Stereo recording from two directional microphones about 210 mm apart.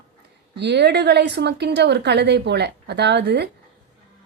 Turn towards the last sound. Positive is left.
turn(degrees=-55)  # may be behind; listen again after turning